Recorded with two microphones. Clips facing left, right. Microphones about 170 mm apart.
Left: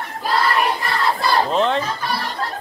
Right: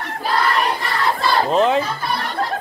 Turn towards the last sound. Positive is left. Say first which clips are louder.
# right 3 dB
turn(degrees=-5)  # may be behind; listen again after turning